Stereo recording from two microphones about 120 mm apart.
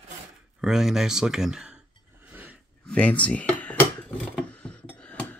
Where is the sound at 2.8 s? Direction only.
10° left (ahead or behind).